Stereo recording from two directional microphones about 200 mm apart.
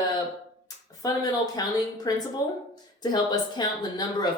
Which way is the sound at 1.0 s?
20° left (ahead or behind).